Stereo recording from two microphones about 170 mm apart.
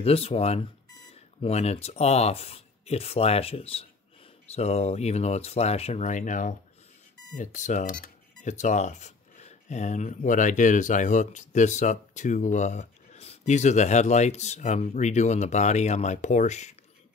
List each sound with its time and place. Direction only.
0.0 s speech: 35° left (ahead or behind)